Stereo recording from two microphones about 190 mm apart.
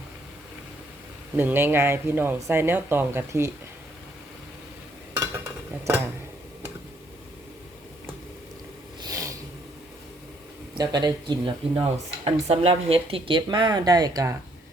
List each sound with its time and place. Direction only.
1.4 s speech: 10° right (ahead or behind)
9.0 s a sound: 20° right (ahead or behind)
10.8 s speech: 20° right (ahead or behind)